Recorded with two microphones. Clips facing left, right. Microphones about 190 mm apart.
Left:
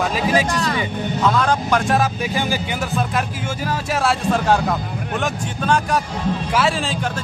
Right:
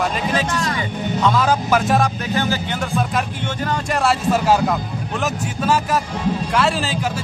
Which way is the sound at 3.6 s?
Centre (ahead or behind).